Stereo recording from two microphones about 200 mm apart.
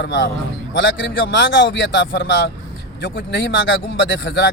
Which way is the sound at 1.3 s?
60° left (ahead or behind).